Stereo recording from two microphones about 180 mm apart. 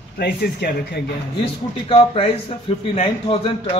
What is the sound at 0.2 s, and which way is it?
Speech, 65° left (ahead or behind).